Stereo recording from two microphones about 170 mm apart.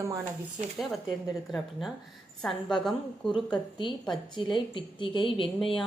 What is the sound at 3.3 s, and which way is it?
A woman's voice, 30° left (ahead or behind).